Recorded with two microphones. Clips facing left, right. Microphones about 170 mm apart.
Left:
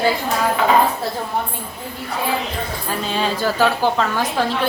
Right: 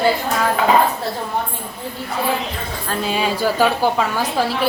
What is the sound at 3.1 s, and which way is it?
A woman's voice, 10° right (ahead or behind).